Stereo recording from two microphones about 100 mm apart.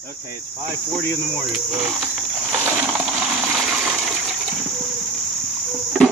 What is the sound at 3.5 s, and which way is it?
Water, 5° right (ahead or behind).